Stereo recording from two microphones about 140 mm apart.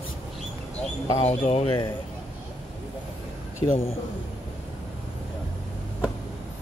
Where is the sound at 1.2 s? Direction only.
50° left (ahead or behind).